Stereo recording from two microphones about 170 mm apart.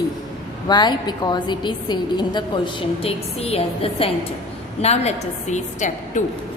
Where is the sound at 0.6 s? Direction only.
25° left (ahead or behind); by 6.3 s 45° left (ahead or behind).